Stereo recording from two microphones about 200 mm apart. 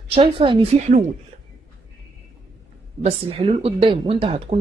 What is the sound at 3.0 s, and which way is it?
Speech, 30° right (ahead or behind).